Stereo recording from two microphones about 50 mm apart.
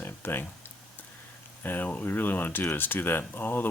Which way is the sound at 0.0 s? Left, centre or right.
Left.